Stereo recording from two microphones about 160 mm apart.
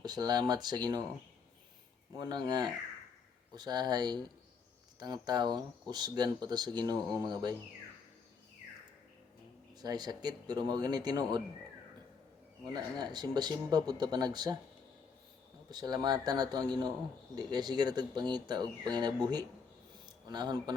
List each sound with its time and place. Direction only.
0.0 s speech: 25° right (ahead or behind)
2.1 s speech: 25° right (ahead or behind)
9.8 s speech: 25° right (ahead or behind)
12.6 s speech: 25° right (ahead or behind)
15.7 s speech: 25° right (ahead or behind)